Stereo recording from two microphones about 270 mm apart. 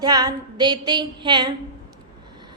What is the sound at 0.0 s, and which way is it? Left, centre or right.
A woman's voice, centre.